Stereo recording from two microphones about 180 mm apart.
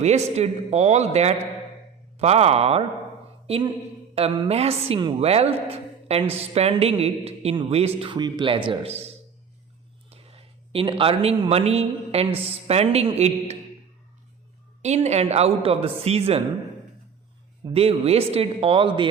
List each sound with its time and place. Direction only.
0.0 s a woman's voice: 40° right (ahead or behind)
14.8 s speech: 40° right (ahead or behind)
17.7 s speech: 35° right (ahead or behind)